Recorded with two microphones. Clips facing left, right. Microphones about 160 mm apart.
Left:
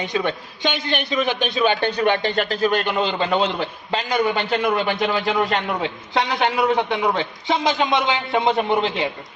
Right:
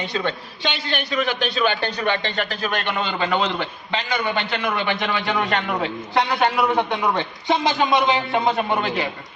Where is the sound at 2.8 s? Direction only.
40° left (ahead or behind).